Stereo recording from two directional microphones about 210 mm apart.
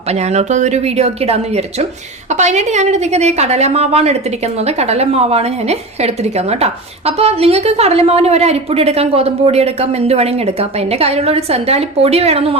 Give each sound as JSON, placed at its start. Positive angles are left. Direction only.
{"t": 0.1, "sound": "a woman's voice", "side_deg": -30}